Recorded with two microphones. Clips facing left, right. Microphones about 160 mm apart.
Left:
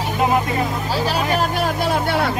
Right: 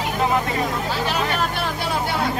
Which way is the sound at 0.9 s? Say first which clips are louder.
Left 3 dB; 35° left (ahead or behind).